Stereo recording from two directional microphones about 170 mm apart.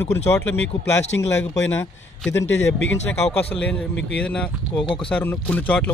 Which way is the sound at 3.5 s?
5° left (ahead or behind).